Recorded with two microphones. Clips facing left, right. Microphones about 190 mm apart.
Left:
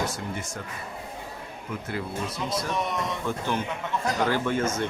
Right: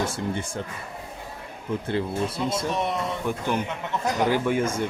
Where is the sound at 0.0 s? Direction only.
30° right (ahead or behind).